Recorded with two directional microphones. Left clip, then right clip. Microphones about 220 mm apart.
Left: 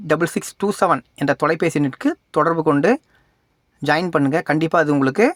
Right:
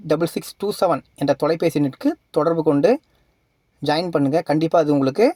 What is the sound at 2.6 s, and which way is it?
Speech, 20° left (ahead or behind).